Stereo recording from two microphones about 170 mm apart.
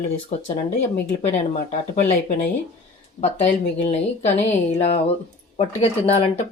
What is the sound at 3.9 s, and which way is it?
Speech, 40° left (ahead or behind).